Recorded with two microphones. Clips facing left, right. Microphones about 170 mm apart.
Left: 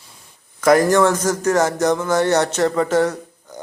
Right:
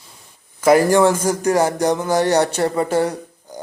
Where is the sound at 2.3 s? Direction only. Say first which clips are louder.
Even; 10° right (ahead or behind).